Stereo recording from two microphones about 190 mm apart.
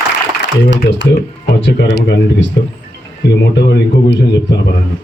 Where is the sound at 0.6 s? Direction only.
70° left (ahead or behind).